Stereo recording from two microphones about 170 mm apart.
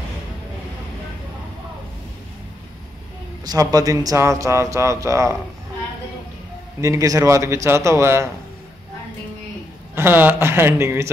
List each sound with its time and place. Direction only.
3.4 s a man's voice: 20° right (ahead or behind)
6.8 s a man's voice: 20° right (ahead or behind)
9.9 s a man's voice: 10° right (ahead or behind)